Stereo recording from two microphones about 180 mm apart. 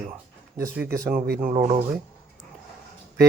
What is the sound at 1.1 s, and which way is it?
Speech, 60° right (ahead or behind).